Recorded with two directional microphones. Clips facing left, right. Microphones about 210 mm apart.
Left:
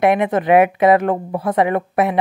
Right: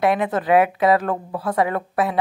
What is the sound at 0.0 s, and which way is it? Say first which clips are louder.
Speech: left 4 dB; 20° left (ahead or behind).